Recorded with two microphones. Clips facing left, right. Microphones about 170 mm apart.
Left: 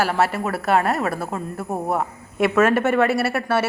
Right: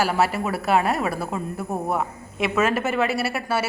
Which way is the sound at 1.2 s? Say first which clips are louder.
Even; 5° left (ahead or behind).